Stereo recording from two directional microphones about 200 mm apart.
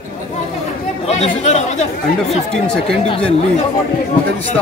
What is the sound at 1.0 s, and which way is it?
Speech, 35° left (ahead or behind).